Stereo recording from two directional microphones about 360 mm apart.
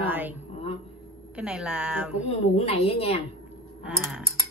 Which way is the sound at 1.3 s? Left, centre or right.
Centre.